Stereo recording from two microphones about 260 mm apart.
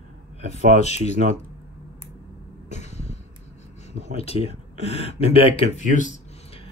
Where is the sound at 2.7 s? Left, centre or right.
Left.